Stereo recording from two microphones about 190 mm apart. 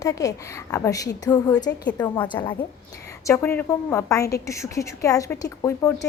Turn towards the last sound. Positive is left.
turn(degrees=15)  # may be behind; listen again after turning